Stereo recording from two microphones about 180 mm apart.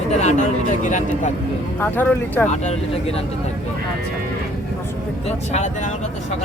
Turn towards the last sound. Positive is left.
turn(degrees=40)  # may be behind; listen again after turning